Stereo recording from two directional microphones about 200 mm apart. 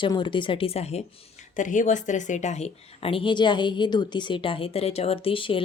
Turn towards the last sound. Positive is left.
turn(degrees=25)  # may be behind; listen again after turning